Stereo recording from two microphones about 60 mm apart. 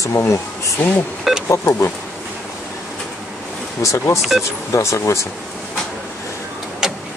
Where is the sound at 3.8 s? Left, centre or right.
Left.